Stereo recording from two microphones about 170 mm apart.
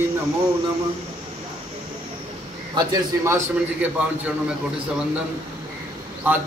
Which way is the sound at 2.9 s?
15° right (ahead or behind).